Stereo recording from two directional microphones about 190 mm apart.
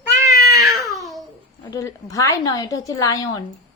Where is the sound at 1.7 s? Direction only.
15° left (ahead or behind).